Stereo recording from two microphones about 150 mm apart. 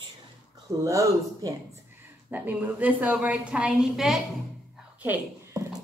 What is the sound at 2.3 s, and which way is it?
A woman's voice, 10° right (ahead or behind).